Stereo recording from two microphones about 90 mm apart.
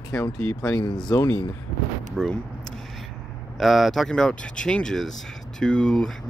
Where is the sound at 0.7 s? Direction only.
50° left (ahead or behind).